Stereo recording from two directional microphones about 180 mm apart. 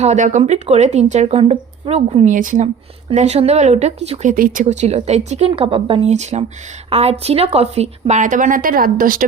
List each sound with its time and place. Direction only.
0.0 s a woman's voice: 40° right (ahead or behind)
4.6 s a woman's voice: 40° right (ahead or behind)